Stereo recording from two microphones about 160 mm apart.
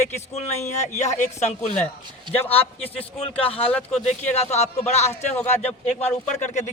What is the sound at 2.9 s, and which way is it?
Speech, 35° left (ahead or behind).